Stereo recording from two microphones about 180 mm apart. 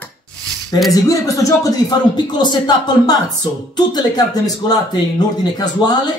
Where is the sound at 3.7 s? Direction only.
25° left (ahead or behind).